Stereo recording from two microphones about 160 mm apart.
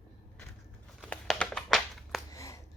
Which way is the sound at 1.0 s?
5° left (ahead or behind).